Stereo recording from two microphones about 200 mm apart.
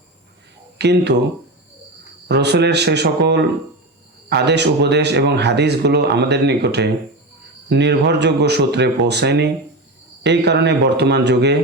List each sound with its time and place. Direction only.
0.8 s speech: 55° right (ahead or behind)
2.2 s speech: 55° right (ahead or behind)